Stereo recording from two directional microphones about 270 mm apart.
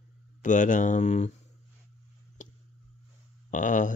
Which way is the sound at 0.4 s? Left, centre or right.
Left.